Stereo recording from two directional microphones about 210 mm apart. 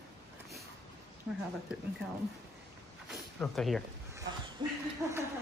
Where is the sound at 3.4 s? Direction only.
Centre (ahead or behind).